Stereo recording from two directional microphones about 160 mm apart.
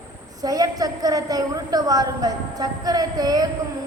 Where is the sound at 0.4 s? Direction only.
25° right (ahead or behind).